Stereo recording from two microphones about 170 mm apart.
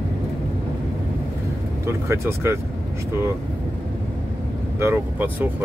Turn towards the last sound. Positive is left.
turn(degrees=-10)  # may be behind; listen again after turning